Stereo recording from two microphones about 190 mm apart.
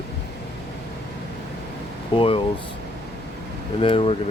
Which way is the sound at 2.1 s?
30° left (ahead or behind).